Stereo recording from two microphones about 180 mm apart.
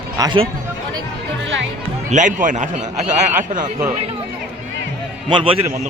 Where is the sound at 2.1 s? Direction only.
45° right (ahead or behind).